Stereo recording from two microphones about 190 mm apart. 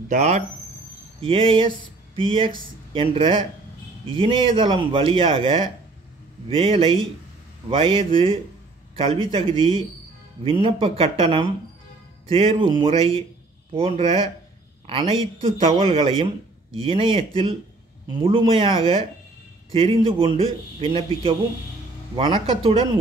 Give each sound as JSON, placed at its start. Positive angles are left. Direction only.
{"t": 0.1, "sound": "a man's voice", "side_deg": -35}